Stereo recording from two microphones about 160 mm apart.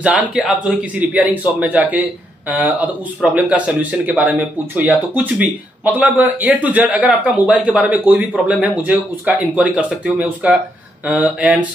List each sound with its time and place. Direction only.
0.0 s a man's voice: 5° right (ahead or behind)